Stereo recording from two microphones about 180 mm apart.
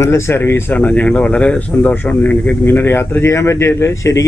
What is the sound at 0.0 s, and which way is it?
Speech, 15° left (ahead or behind).